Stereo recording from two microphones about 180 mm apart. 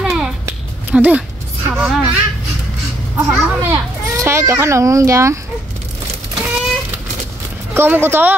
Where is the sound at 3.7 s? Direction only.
15° right (ahead or behind).